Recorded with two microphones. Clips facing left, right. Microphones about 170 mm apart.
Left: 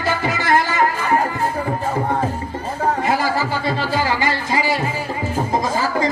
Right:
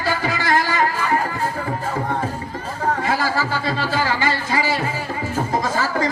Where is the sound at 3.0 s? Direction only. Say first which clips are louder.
Left 2 dB; 20° left (ahead or behind).